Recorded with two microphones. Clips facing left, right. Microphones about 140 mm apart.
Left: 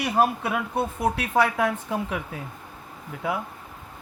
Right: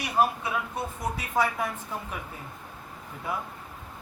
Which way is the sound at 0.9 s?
70° left (ahead or behind).